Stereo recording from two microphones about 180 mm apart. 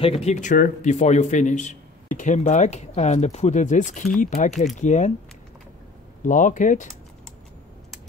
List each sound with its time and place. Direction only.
0.0 s speech: 35° left (ahead or behind)
6.2 s speech: 45° left (ahead or behind)